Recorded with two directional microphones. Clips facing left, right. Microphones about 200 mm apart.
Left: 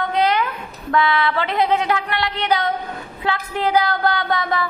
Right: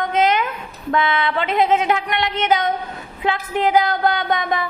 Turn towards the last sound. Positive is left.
turn(degrees=-20)  # may be behind; listen again after turning